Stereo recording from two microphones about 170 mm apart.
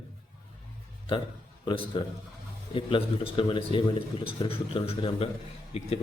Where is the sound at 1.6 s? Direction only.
30° left (ahead or behind).